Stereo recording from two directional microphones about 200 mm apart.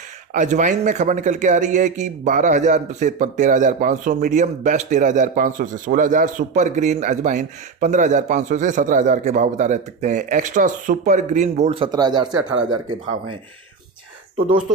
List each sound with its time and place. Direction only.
0.3 s a man's voice: 40° right (ahead or behind); by 12.4 s 20° right (ahead or behind)
12.4 s speech: 75° right (ahead or behind)